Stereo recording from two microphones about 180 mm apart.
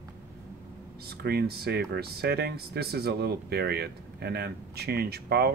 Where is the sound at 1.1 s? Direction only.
60° right (ahead or behind).